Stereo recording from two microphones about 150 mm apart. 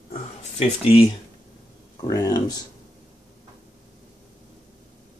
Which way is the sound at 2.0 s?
25° left (ahead or behind).